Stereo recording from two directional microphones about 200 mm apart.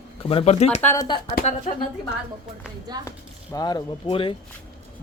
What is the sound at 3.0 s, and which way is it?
Speech, 15° left (ahead or behind).